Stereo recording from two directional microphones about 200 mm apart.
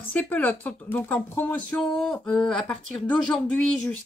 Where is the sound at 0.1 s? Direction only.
10° left (ahead or behind).